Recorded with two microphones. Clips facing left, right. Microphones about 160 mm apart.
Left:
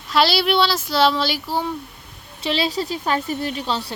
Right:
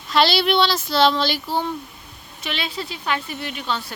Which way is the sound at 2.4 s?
35° left (ahead or behind).